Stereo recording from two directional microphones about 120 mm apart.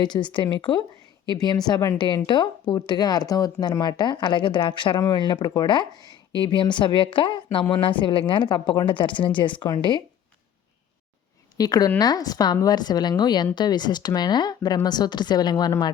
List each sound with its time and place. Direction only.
0.0 s speech: 40° left (ahead or behind)
11.5 s speech: 35° left (ahead or behind)